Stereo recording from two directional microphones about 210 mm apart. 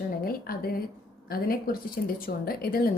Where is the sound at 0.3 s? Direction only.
45° left (ahead or behind).